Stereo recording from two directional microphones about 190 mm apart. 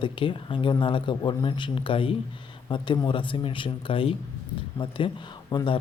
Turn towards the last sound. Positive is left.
turn(degrees=25)  # may be behind; listen again after turning